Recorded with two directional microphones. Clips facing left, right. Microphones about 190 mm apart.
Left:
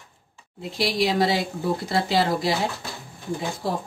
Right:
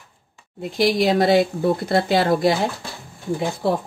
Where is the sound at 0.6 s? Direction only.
55° right (ahead or behind).